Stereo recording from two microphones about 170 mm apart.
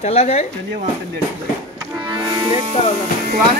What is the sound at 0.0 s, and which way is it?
Speech, 40° left (ahead or behind).